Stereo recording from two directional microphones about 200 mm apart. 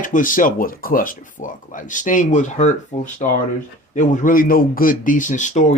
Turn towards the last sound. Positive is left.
turn(degrees=35)  # may be behind; listen again after turning